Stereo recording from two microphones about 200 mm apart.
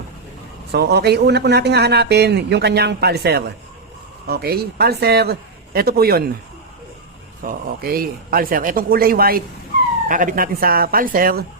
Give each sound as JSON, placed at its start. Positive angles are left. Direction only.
{"t": 0.7, "sound": "a man's voice", "side_deg": -55}
{"t": 7.4, "sound": "a man's voice", "side_deg": -50}